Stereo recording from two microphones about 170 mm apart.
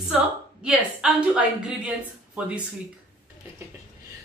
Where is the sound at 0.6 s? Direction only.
5° right (ahead or behind).